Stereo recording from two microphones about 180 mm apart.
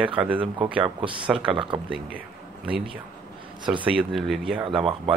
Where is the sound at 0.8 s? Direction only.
30° right (ahead or behind).